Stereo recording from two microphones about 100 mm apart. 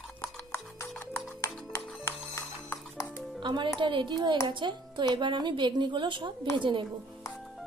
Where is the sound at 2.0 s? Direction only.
25° left (ahead or behind).